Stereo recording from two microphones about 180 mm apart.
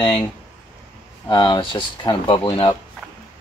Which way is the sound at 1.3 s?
25° left (ahead or behind).